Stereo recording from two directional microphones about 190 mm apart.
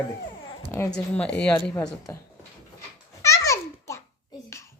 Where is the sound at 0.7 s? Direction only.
10° left (ahead or behind).